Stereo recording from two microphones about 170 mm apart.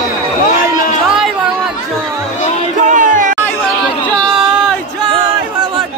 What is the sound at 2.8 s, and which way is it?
Music, 50° right (ahead or behind).